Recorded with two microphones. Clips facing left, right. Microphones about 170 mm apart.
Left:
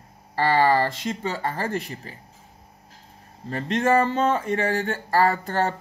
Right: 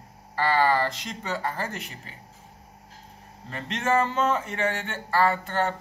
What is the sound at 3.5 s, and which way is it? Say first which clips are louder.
Speech: left 5 dB; 35° left (ahead or behind).